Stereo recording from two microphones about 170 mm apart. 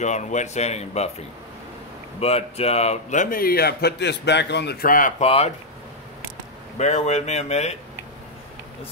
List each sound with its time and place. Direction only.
0.0 s speech: 45° left (ahead or behind)
2.1 s speech: 35° left (ahead or behind); by 4.7 s 85° left
4.8 s speech: 55° left (ahead or behind)
5.2 s speech: 35° left (ahead or behind)
6.8 s speech: 40° left (ahead or behind)